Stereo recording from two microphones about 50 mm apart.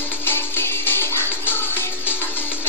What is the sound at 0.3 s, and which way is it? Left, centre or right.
Music, left.